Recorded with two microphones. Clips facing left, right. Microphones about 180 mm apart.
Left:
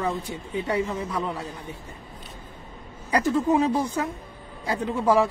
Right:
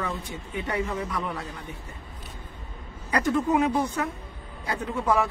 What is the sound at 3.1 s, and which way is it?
A woman's voice, 25° left (ahead or behind).